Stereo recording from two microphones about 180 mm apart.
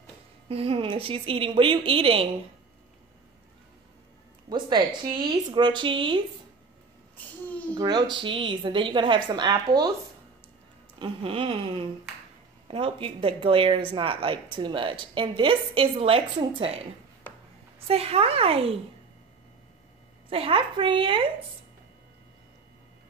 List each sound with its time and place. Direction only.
0.5 s a woman's voice: 30° right (ahead or behind)
4.5 s speech: 25° right (ahead or behind)
7.7 s speech: 25° right (ahead or behind)
11.0 s a woman's voice: 30° right (ahead or behind)
20.2 s speech: 30° right (ahead or behind)